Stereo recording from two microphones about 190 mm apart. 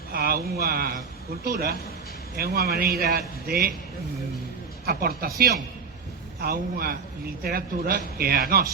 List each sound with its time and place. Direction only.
0.1 s a man's voice: 50° right (ahead or behind)
4.9 s a man's voice: 55° right (ahead or behind)